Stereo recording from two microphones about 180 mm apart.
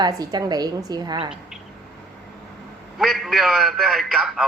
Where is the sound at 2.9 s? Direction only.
Centre (ahead or behind).